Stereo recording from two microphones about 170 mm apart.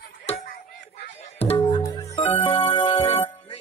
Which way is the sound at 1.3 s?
35° left (ahead or behind).